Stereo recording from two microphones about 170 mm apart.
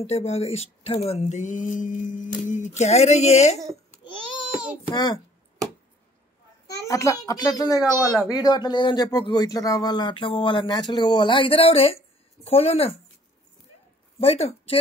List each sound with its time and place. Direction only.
0.0 s speech: 40° left (ahead or behind)
4.9 s speech: 25° left (ahead or behind)
6.9 s speech: 20° left (ahead or behind); by 12.9 s 35° left (ahead or behind)
14.2 s speech: 35° left (ahead or behind)